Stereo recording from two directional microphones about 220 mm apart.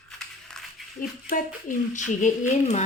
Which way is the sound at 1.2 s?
35° left (ahead or behind).